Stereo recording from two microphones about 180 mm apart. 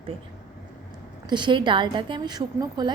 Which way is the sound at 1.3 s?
25° right (ahead or behind).